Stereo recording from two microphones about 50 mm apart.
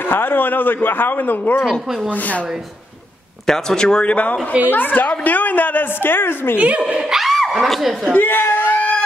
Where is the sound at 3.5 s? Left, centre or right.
Centre.